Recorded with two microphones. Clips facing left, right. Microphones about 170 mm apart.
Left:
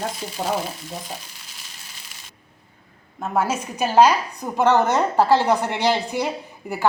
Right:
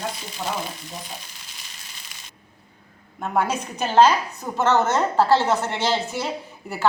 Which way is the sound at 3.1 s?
5° left (ahead or behind).